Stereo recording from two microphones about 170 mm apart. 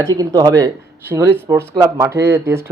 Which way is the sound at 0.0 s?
20° right (ahead or behind).